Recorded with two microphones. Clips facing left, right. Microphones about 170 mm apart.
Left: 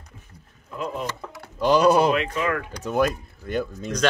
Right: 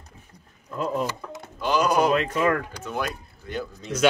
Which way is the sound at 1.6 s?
35° left (ahead or behind).